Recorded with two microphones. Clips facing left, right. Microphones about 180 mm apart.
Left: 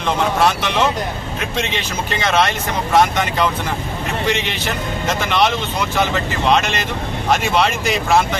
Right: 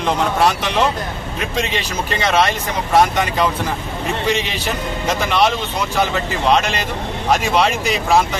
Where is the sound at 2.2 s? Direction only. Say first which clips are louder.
Right 1 dB; 5° right (ahead or behind).